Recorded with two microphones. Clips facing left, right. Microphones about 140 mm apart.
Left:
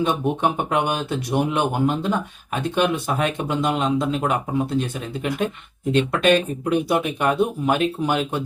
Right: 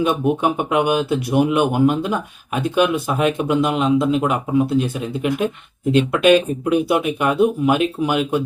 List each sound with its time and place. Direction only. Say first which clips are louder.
0.0 s speech: right 3 dB; 10° right (ahead or behind)